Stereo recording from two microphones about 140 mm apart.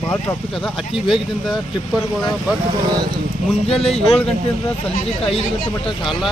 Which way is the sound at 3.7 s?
45° left (ahead or behind).